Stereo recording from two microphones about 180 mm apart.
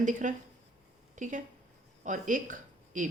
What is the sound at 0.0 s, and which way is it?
A woman's voice, 45° right (ahead or behind).